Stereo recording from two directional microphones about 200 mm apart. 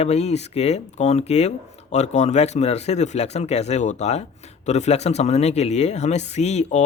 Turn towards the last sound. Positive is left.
turn(degrees=35)  # may be behind; listen again after turning